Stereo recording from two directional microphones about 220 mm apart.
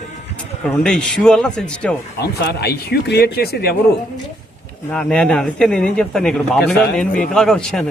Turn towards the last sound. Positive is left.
turn(degrees=5)  # may be behind; listen again after turning